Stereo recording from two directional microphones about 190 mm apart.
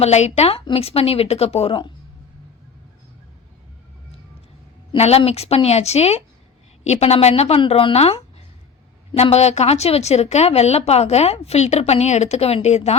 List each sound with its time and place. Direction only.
0.0 s a woman's voice: 35° left (ahead or behind)
4.9 s a woman's voice: 35° left (ahead or behind)